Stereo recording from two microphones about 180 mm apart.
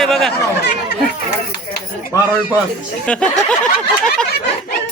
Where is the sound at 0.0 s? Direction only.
Centre (ahead or behind).